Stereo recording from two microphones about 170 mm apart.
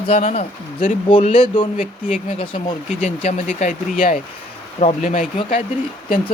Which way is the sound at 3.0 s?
45° left (ahead or behind).